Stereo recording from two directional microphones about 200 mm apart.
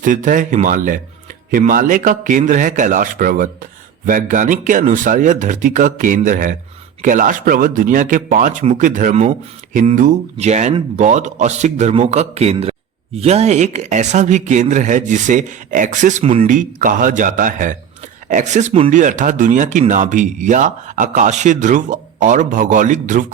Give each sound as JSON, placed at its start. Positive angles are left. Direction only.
{"t": 0.0, "sound": "a man's voice", "side_deg": -40}